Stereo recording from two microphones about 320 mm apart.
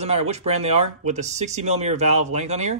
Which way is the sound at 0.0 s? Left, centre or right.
Centre.